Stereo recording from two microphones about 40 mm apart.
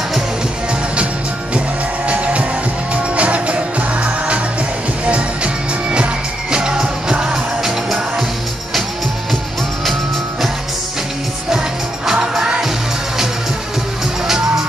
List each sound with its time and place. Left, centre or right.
2.0 s music: right
6.5 s music: centre
12.1 s music: centre
14.2 s music: centre